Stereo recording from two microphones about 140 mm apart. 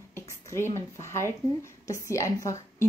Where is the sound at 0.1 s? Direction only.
20° left (ahead or behind).